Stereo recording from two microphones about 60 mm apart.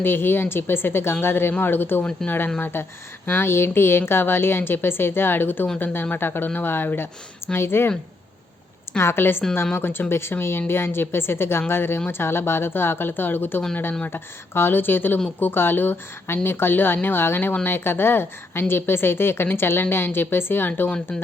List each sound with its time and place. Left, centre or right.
0.0 s speech: left
9.0 s speech: left